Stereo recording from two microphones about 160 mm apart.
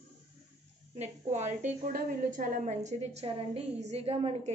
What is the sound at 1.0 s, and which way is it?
A woman's voice, 45° right (ahead or behind).